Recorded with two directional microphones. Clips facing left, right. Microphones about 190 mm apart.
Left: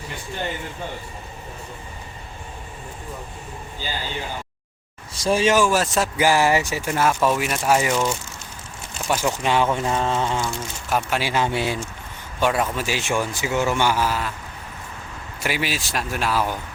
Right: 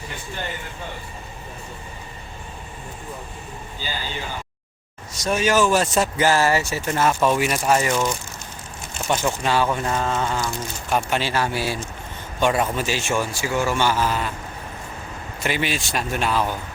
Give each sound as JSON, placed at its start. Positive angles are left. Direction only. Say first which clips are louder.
{"t": 5.1, "sound": "speech", "louder": "left 2 dB", "side_deg": 30}
{"t": 5.5, "sound": "speech", "louder": "right 1 dB", "side_deg": 5}
{"t": 7.8, "sound": "speech", "louder": "even", "side_deg": 10}
{"t": 9.7, "sound": "mantra", "louder": "left 1 dB", "side_deg": 25}
{"t": 10.4, "sound": "speech", "louder": "even", "side_deg": 5}
{"t": 11.3, "sound": "mantra", "louder": "left 1 dB", "side_deg": 20}
{"t": 12.4, "sound": "speech", "louder": "right 1 dB", "side_deg": 0}
{"t": 12.9, "sound": "speech", "louder": "even", "side_deg": 15}
{"t": 15.4, "sound": "speech", "louder": "right 1 dB", "side_deg": 5}